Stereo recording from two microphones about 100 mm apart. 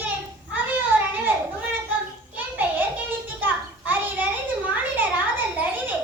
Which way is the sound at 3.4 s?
20° right (ahead or behind).